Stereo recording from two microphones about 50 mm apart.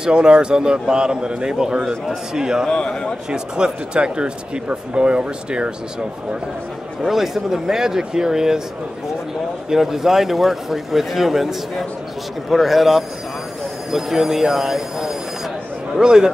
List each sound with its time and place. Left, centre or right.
0.0 s a man's voice: centre
2.7 s a man's voice: centre
3.3 s speech: centre
7.0 s a man's voice: centre
9.7 s a man's voice: centre